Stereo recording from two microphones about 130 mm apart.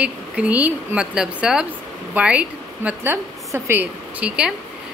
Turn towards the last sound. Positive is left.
turn(degrees=-10)  # may be behind; listen again after turning